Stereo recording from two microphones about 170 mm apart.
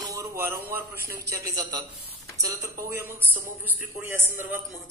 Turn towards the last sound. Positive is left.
turn(degrees=-10)  # may be behind; listen again after turning